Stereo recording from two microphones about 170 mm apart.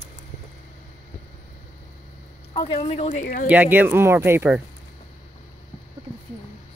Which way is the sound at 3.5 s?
10° right (ahead or behind).